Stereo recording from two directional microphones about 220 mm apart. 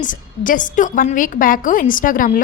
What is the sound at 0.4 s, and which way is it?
A woman's voice, 35° left (ahead or behind).